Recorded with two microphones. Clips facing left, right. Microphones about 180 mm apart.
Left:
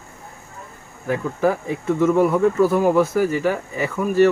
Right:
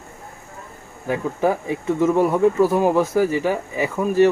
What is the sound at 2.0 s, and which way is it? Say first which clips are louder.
Speech: left 1 dB; 15° right (ahead or behind).